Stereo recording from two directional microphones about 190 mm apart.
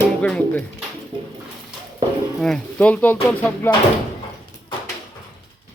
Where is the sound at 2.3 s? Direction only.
Centre (ahead or behind).